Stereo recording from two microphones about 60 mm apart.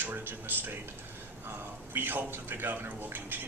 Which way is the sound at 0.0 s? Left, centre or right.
Right.